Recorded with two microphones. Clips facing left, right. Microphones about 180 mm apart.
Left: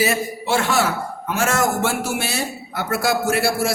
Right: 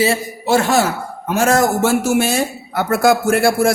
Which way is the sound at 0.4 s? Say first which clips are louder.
Right 5 dB; 40° right (ahead or behind).